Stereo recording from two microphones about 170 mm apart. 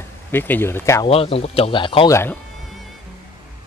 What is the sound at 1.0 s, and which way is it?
Speech, 35° left (ahead or behind).